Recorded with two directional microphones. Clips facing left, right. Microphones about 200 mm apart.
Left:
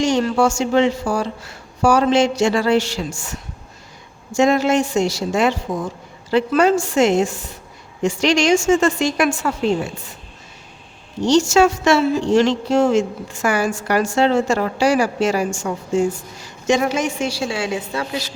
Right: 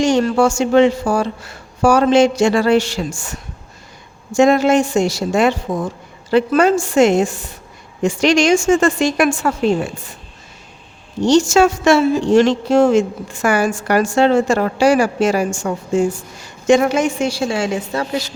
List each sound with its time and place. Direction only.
0.0 s a woman's voice: 50° right (ahead or behind)
11.3 s a woman's voice: 50° right (ahead or behind)